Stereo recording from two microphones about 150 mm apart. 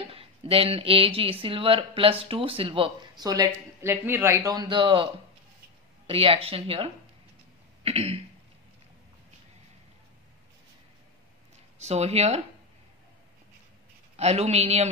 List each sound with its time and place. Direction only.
0.1 s speech: 40° right (ahead or behind)
7.8 s throat clearing: 40° right (ahead or behind)
11.8 s speech: 45° right (ahead or behind)
14.1 s speech: 45° right (ahead or behind)